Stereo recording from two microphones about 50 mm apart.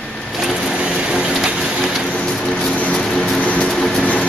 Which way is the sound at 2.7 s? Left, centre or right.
Left.